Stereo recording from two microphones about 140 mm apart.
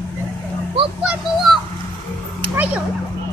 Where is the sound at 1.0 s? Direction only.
Centre (ahead or behind).